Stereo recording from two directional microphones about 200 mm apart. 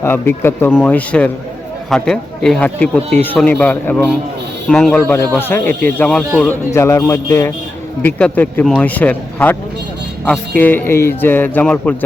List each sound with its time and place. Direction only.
0.0 s speech: 10° left (ahead or behind)